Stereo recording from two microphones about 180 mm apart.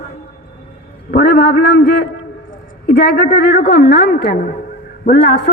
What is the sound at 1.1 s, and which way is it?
A woman's voice, 65° left (ahead or behind).